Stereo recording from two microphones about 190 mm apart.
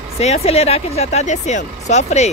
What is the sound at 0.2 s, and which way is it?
Speech, 35° left (ahead or behind).